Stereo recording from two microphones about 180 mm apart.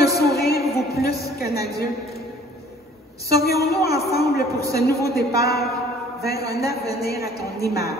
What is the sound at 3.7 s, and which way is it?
A woman's voice, 60° left (ahead or behind).